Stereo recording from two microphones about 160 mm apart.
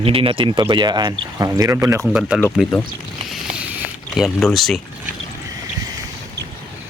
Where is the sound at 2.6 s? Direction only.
5° right (ahead or behind).